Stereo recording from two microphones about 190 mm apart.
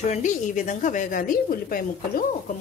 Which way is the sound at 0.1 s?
40° left (ahead or behind).